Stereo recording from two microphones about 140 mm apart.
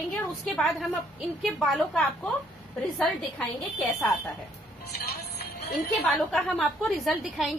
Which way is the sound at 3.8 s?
Centre (ahead or behind).